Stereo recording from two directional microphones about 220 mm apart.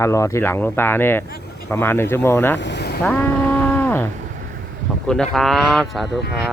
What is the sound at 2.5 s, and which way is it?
Speech, 50° left (ahead or behind).